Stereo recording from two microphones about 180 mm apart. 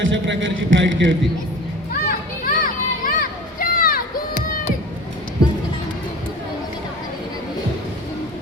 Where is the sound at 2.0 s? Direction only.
50° left (ahead or behind).